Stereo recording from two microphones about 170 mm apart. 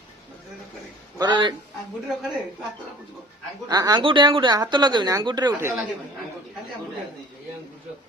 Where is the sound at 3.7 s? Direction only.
20° right (ahead or behind).